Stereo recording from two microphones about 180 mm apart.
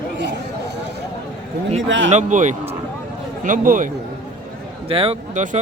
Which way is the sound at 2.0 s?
40° right (ahead or behind).